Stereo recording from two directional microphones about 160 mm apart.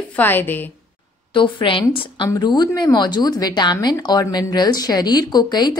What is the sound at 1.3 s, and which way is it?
A woman's voice, 30° left (ahead or behind).